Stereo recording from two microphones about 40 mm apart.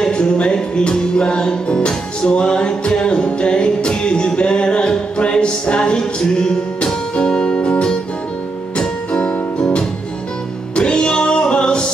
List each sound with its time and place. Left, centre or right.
0.0 s music: left